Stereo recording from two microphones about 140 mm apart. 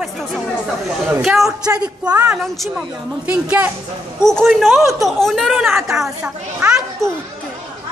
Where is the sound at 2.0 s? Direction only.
15° right (ahead or behind).